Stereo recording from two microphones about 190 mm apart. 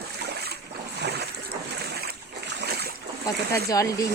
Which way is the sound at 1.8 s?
55° right (ahead or behind).